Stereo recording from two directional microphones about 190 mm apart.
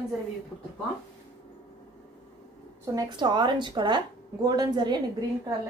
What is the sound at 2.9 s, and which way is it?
A woman's voice, 20° right (ahead or behind).